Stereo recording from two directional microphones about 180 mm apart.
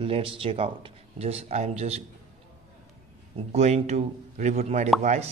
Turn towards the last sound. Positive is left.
turn(degrees=-40)  # may be behind; listen again after turning